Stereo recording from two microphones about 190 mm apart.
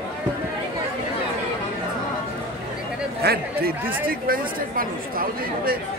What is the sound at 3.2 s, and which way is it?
Speech, 55° right (ahead or behind).